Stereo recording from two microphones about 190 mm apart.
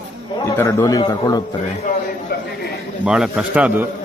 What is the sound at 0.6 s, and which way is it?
Speech, 15° left (ahead or behind).